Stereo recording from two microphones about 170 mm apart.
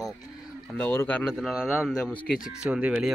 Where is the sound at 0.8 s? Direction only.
10° left (ahead or behind).